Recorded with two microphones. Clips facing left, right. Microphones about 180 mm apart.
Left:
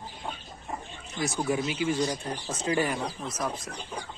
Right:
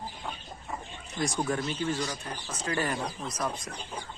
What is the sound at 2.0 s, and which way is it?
Speech, 30° left (ahead or behind).